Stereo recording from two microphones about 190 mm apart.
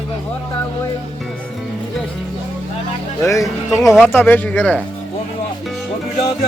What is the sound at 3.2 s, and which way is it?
A man's voice, 15° left (ahead or behind).